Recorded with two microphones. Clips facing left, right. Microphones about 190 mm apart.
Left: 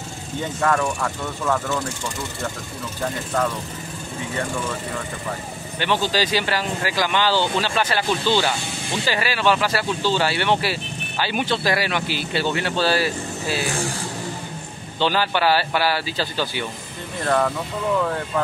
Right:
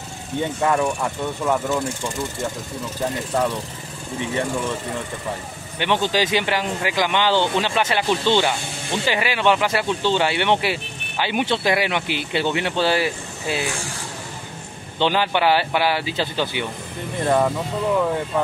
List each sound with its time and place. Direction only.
0.6 s speech: 20° right (ahead or behind)
5.8 s speech: 20° right (ahead or behind)
15.0 s speech: 20° right (ahead or behind)